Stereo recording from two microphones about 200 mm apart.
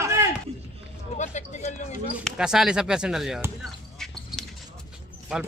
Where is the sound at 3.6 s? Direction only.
Centre (ahead or behind).